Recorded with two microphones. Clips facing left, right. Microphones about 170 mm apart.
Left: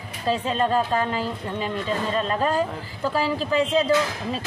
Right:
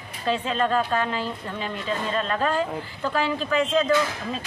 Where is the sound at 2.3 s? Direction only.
35° left (ahead or behind).